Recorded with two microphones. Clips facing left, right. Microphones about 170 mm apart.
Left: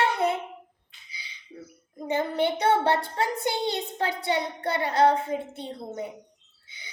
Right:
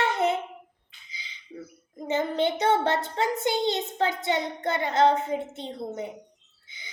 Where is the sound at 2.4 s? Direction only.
20° right (ahead or behind).